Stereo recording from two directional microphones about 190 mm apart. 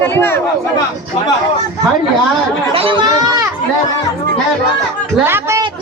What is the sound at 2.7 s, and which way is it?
Speech, 30° right (ahead or behind).